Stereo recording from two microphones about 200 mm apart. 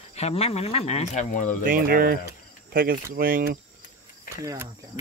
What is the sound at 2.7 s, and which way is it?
Cricket, 45° right (ahead or behind).